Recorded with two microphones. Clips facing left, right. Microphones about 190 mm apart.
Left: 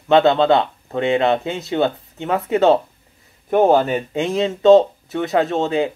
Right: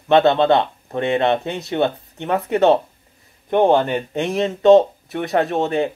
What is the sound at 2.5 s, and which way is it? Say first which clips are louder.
Speech: even; 20° right (ahead or behind).